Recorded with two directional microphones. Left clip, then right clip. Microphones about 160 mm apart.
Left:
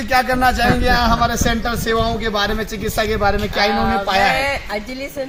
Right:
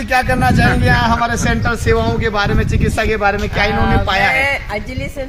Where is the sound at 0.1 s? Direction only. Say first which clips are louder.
Right 1 dB; 15° right (ahead or behind); by 4.4 s 5° left (ahead or behind).